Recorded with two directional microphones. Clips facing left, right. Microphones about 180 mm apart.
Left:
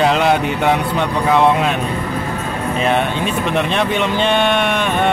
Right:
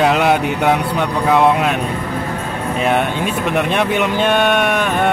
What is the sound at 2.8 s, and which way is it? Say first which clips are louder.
Music: right 1 dB; 10° right (ahead or behind).